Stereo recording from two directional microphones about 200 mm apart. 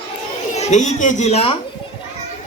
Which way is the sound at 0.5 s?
35° left (ahead or behind).